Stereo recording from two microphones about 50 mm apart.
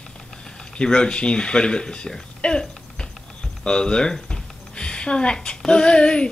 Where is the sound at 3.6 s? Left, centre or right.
Centre.